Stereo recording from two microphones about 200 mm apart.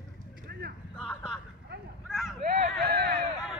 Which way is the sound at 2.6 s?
50° right (ahead or behind).